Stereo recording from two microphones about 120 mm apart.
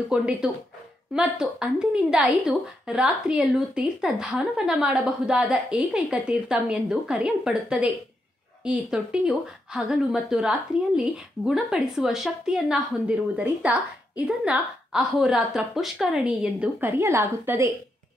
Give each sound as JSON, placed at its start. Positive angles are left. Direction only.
{"t": 0.1, "sound": "a woman's voice", "side_deg": -5}
{"t": 17.0, "sound": "a woman's voice", "side_deg": -25}